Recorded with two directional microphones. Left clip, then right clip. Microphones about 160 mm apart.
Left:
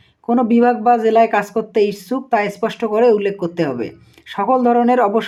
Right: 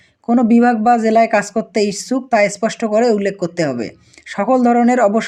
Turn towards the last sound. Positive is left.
turn(degrees=-35)  # may be behind; listen again after turning